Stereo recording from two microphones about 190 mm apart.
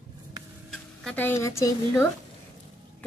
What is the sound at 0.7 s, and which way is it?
A woman's voice, 5° left (ahead or behind).